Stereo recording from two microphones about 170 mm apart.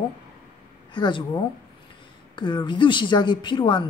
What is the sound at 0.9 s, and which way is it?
A woman's voice, 25° left (ahead or behind).